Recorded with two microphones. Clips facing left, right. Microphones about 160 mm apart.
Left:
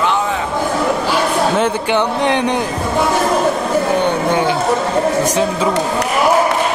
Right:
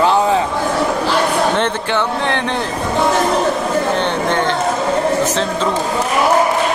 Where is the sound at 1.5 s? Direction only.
10° left (ahead or behind).